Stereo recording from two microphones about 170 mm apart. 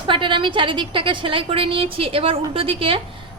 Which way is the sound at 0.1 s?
30° right (ahead or behind).